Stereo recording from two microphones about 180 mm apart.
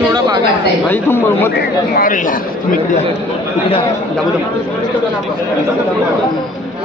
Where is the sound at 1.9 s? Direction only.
50° left (ahead or behind).